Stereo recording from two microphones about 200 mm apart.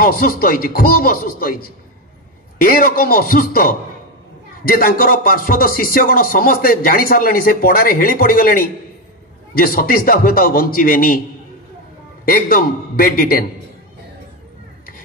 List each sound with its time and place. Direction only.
0.0 s speech: 45° left (ahead or behind)
12.3 s speech: 45° left (ahead or behind)